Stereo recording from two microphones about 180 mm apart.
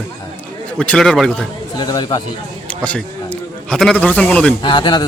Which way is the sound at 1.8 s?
25° left (ahead or behind).